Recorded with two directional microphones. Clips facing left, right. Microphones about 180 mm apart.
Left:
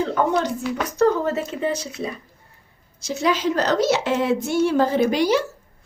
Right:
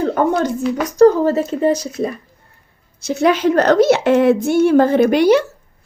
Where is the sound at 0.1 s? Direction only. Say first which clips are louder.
Right 4 dB; 50° right (ahead or behind).